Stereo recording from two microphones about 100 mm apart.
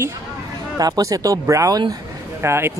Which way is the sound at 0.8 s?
35° right (ahead or behind).